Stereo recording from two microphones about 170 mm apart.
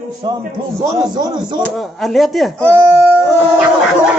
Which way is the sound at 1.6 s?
Centre (ahead or behind).